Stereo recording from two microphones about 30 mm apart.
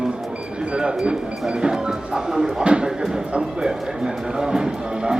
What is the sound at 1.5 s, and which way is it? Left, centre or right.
Speech, right.